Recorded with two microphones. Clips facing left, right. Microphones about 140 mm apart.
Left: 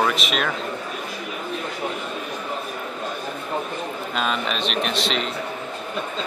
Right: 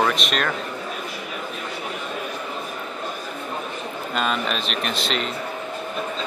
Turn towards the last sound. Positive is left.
turn(degrees=0)  # may be behind; listen again after turning